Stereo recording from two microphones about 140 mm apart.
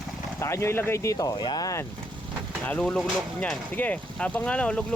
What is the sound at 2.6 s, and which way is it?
Speech, 10° left (ahead or behind).